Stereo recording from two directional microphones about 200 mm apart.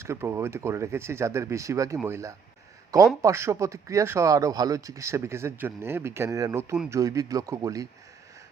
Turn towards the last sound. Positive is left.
turn(degrees=-15)  # may be behind; listen again after turning